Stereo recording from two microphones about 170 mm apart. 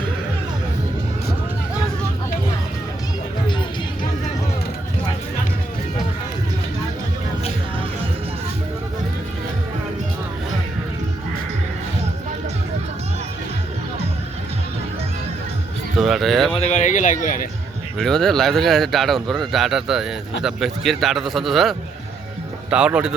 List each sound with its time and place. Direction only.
16.0 s speech: centre (ahead or behind)
16.6 s speech: 45° left (ahead or behind)
17.9 s a man's voice: 5° left (ahead or behind)